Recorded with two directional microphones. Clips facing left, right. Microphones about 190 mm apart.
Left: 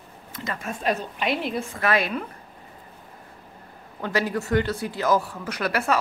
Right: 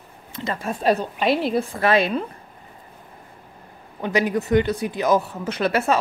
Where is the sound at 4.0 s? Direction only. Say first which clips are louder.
Right 4 dB; 20° right (ahead or behind).